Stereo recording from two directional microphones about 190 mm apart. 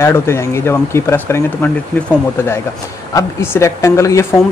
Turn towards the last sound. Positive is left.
turn(degrees=15)  # may be behind; listen again after turning